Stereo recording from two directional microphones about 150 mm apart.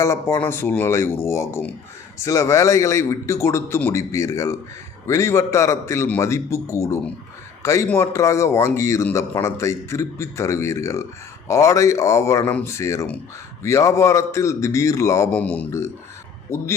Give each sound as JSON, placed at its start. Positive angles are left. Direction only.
{"t": 0.0, "sound": "a man's voice", "side_deg": 20}
{"t": 15.3, "sound": "a man's voice", "side_deg": 10}